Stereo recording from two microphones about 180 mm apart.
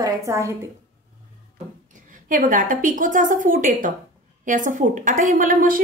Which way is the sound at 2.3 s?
50° right (ahead or behind).